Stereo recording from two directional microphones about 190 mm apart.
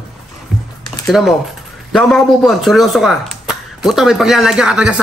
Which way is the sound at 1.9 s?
Centre (ahead or behind).